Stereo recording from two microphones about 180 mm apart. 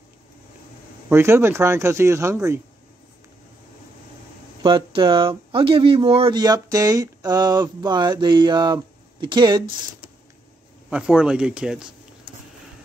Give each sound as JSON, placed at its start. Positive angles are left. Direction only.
{"t": 1.0, "sound": "speech", "side_deg": -15}
{"t": 4.6, "sound": "speech", "side_deg": -25}
{"t": 10.9, "sound": "speech", "side_deg": -5}